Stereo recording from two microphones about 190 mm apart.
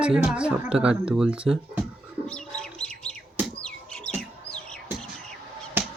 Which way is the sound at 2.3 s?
5° left (ahead or behind).